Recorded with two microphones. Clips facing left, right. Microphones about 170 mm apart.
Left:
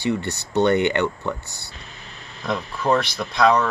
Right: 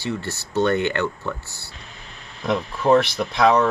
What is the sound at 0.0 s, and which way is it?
Speech, 15° left (ahead or behind).